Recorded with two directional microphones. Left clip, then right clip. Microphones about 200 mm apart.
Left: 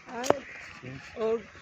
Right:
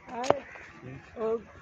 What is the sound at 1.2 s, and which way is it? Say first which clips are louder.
Speech: left 2 dB; 50° left (ahead or behind).